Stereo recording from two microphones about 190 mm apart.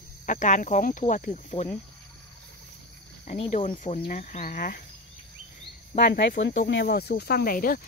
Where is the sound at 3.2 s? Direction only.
40° left (ahead or behind).